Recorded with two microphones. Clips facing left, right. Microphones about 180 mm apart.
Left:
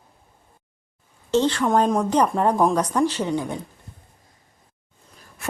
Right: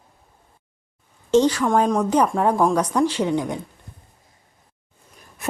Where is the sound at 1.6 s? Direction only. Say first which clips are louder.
Even; centre (ahead or behind).